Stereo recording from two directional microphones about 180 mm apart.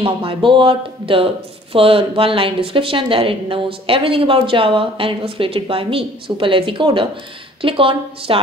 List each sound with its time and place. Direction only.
0.0 s speech: 30° right (ahead or behind)